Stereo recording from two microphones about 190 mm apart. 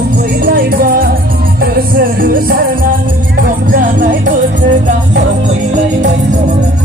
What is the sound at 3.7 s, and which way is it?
Music, 45° right (ahead or behind).